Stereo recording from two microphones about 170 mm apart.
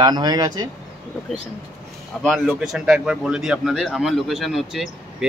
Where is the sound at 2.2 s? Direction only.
Centre (ahead or behind).